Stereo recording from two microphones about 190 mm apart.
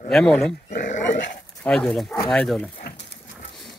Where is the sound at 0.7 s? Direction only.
40° left (ahead or behind).